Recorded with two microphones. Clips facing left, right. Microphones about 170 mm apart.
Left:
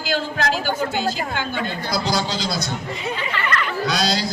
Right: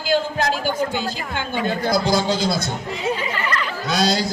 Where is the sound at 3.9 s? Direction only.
50° right (ahead or behind).